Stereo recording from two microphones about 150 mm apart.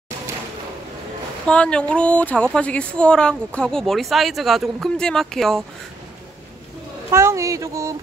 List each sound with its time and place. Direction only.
1.5 s a woman's voice: 5° left (ahead or behind)
7.1 s speech: 20° right (ahead or behind)